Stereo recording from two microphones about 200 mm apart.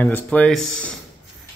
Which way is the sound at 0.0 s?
10° left (ahead or behind).